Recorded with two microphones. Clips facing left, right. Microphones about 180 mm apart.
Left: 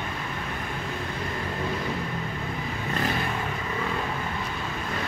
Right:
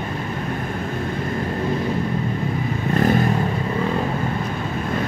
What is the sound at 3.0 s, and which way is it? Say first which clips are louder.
Vehicle: right 11 dB; 45° right (ahead or behind).